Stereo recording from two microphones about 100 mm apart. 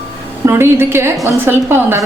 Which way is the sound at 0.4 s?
25° right (ahead or behind).